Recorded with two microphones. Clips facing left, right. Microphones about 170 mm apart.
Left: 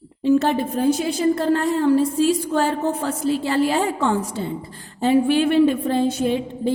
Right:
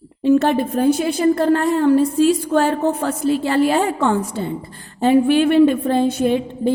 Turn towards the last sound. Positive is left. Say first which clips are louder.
# right 3 dB
turn(degrees=-55)  # may be behind; listen again after turning